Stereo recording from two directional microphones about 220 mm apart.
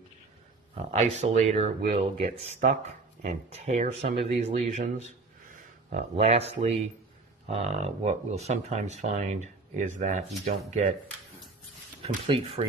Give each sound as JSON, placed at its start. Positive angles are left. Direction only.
{"t": 0.7, "sound": "speech", "side_deg": -30}
{"t": 12.0, "sound": "speech", "side_deg": -25}